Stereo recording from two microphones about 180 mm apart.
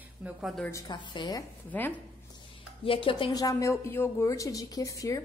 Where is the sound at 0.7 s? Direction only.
25° left (ahead or behind).